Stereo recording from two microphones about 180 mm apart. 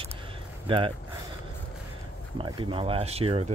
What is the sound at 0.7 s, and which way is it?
Speech, 30° right (ahead or behind).